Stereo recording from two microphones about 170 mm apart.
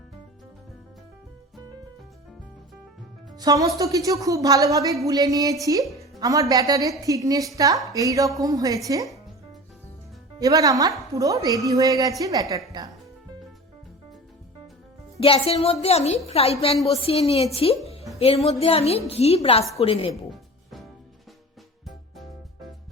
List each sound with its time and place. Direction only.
3.3 s speech: 20° right (ahead or behind)
10.4 s speech: 20° right (ahead or behind)
15.2 s a woman's voice: 35° left (ahead or behind)